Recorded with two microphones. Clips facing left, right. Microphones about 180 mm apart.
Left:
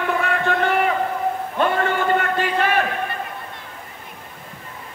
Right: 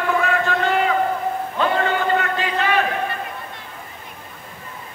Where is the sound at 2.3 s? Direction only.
55° left (ahead or behind).